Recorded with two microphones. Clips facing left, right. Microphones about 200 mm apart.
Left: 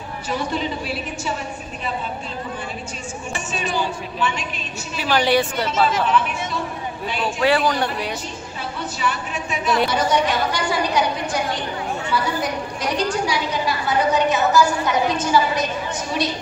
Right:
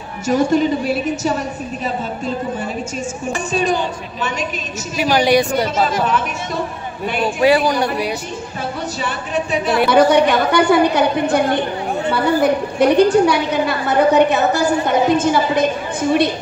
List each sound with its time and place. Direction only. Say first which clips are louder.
0.3 s a woman's voice: right 10 dB; 45° right (ahead or behind)
4.2 s a woman's voice: right 2 dB; 40° right (ahead or behind)
4.9 s a woman's voice: right 4 dB; 15° right (ahead or behind)
5.7 s a woman's voice: right 2 dB; 45° right (ahead or behind)
7.3 s a woman's voice: right 4 dB; 15° right (ahead or behind)
9.0 s a woman's voice: right 3 dB; 35° right (ahead or behind)
9.8 s a woman's voice: right 8 dB; 60° right (ahead or behind)